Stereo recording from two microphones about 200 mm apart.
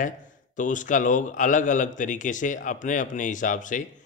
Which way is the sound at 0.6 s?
40° left (ahead or behind).